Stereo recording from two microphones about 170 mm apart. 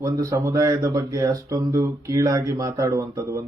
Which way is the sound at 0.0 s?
20° right (ahead or behind).